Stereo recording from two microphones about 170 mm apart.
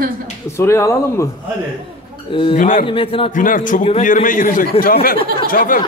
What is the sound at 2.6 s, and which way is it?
Speech, 50° left (ahead or behind).